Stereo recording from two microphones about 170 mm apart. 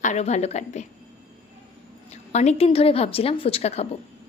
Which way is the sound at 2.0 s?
40° left (ahead or behind).